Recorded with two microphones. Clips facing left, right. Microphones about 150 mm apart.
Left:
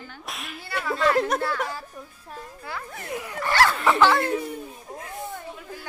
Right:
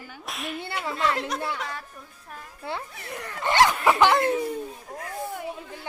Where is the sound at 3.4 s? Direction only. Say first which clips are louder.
Right 1 dB; 20° right (ahead or behind).